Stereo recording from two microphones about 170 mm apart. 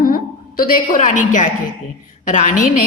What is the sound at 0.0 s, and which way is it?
A woman's voice, 55° left (ahead or behind).